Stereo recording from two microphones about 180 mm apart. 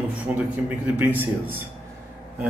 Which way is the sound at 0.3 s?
10° right (ahead or behind).